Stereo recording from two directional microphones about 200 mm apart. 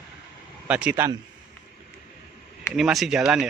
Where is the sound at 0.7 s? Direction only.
5° right (ahead or behind).